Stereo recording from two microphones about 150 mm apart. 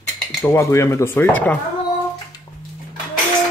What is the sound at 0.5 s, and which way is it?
Speech, 20° left (ahead or behind).